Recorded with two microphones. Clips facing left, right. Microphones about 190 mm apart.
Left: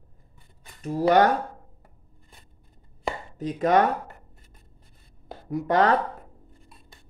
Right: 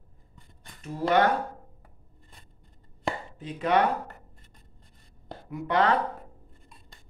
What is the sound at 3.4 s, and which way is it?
Speech, 40° left (ahead or behind).